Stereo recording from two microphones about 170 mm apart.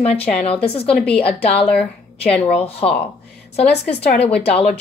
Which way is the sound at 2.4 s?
35° left (ahead or behind).